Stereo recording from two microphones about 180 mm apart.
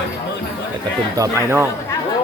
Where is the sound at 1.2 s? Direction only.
15° right (ahead or behind).